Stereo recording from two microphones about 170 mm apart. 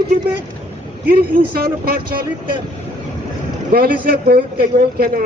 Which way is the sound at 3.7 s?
60° right (ahead or behind).